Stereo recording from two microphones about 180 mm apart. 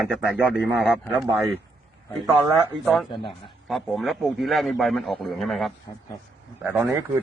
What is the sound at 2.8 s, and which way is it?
Speech, centre (ahead or behind).